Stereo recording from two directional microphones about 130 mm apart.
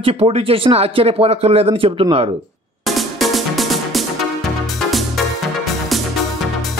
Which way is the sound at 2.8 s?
Centre (ahead or behind).